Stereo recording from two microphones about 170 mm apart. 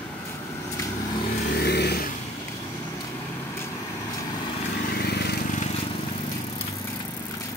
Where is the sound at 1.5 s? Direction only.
75° left (ahead or behind).